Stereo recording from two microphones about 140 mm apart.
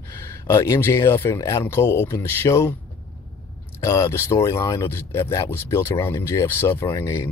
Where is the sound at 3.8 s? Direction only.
25° left (ahead or behind).